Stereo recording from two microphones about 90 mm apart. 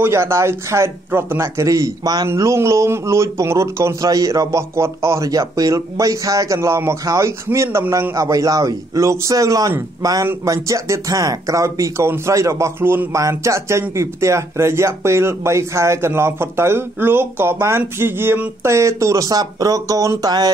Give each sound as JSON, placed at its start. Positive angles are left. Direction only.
{"t": 0.0, "sound": "speech", "side_deg": -30}
{"t": 2.2, "sound": "speech", "side_deg": -30}
{"t": 20.2, "sound": "speech", "side_deg": -50}